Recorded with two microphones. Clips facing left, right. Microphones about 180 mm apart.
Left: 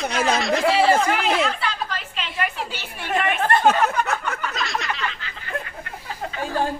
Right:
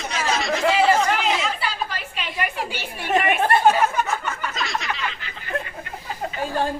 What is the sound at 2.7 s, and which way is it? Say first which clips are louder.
Speech: right 6 dB; 15° right (ahead or behind).